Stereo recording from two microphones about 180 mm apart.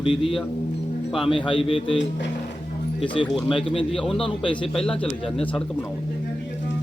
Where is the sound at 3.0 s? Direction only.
30° left (ahead or behind).